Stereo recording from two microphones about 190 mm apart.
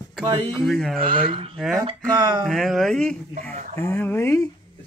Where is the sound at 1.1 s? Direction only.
30° right (ahead or behind).